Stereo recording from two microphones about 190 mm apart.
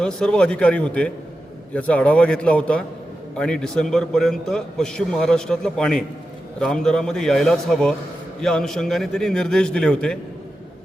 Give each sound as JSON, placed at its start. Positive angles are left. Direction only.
{"t": 0.0, "sound": "a man's voice", "side_deg": 5}